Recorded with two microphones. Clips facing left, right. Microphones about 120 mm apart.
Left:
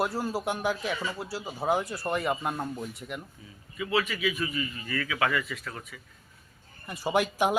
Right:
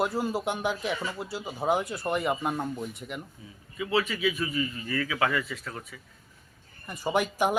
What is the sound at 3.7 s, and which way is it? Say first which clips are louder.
A man's voice: right 1 dB; 25° right (ahead or behind).